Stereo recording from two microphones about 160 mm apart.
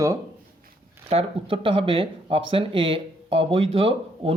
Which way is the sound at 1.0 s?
35° right (ahead or behind).